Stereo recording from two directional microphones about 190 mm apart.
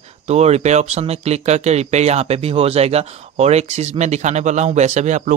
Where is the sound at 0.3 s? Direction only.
35° right (ahead or behind).